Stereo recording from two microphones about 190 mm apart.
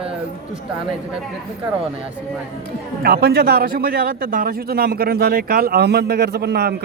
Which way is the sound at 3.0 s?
55° right (ahead or behind).